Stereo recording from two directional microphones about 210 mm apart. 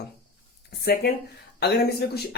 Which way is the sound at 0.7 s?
45° left (ahead or behind).